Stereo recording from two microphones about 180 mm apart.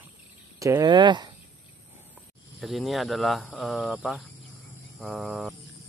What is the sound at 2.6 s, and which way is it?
Speech, centre (ahead or behind).